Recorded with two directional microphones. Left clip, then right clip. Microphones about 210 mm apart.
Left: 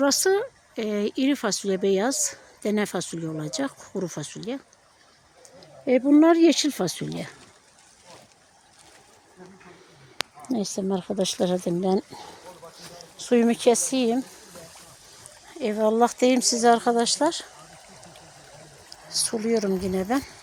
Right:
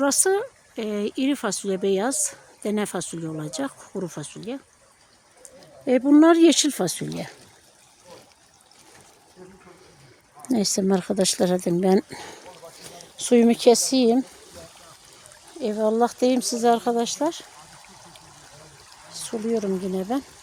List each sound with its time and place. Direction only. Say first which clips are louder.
0.0 s speech: even; centre (ahead or behind)
5.5 s speech: even; 10° right (ahead or behind)
10.5 s speech: right 6 dB; 25° right (ahead or behind)
15.5 s speech: even; 5° right (ahead or behind)
19.2 s speech: left 1 dB; centre (ahead or behind)